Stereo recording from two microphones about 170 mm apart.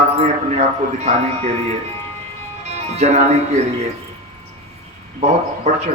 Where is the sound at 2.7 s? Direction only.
40° right (ahead or behind).